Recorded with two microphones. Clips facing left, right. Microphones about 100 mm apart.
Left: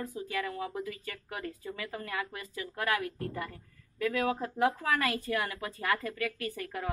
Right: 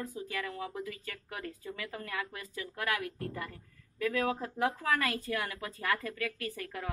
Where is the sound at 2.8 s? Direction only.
25° left (ahead or behind).